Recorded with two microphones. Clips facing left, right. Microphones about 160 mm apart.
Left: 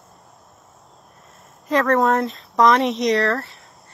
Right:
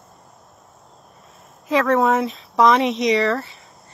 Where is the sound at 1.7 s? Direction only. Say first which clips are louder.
Even; centre (ahead or behind).